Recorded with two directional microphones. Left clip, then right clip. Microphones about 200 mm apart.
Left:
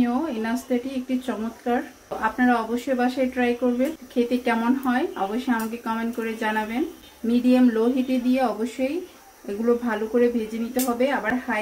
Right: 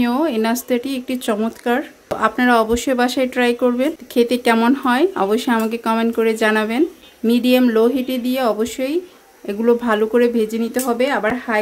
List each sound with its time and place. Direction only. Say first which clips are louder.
0.0 s speech: right 7 dB; 55° right (ahead or behind)
7.2 s speech: right 5 dB; 45° right (ahead or behind)